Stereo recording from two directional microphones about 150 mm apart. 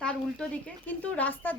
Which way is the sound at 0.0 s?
5° left (ahead or behind).